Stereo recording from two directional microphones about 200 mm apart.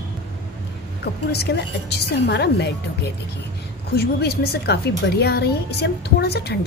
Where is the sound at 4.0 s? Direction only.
55° left (ahead or behind).